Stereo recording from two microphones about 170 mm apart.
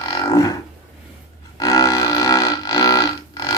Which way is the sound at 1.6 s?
20° left (ahead or behind).